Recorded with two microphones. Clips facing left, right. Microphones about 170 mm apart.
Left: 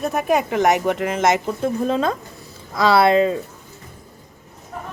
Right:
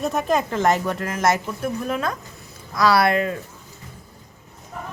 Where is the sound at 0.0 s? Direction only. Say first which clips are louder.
Left 2 dB; 5° left (ahead or behind); by 3.3 s 25° left (ahead or behind).